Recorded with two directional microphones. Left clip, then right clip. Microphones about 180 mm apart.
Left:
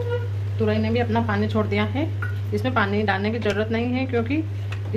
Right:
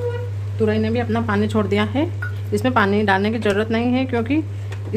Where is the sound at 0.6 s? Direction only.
60° right (ahead or behind).